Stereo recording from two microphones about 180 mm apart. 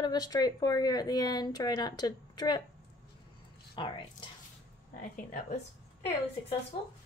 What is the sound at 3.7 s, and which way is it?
Speech, 25° left (ahead or behind).